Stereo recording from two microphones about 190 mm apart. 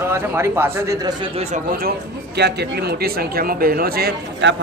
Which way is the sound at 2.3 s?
60° right (ahead or behind).